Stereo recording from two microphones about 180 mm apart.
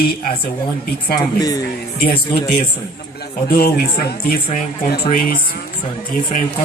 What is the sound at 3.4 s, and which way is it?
Speech, 60° left (ahead or behind).